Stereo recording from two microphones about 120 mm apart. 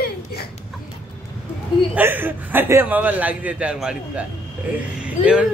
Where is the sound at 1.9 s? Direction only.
15° right (ahead or behind).